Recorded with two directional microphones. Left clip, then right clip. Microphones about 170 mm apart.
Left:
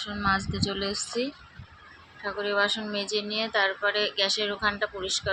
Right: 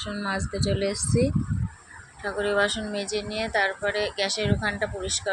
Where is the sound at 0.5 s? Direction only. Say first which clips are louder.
Right 3 dB; 90° left.